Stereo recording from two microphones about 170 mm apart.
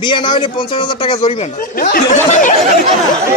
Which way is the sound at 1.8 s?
60° left (ahead or behind).